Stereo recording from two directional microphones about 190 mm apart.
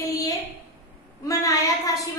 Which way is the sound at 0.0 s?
20° left (ahead or behind).